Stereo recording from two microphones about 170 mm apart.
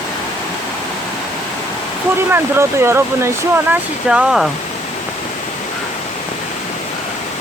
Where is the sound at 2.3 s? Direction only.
15° right (ahead or behind).